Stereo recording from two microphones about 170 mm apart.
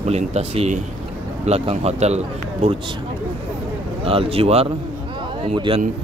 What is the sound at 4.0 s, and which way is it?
A man's voice, 35° right (ahead or behind).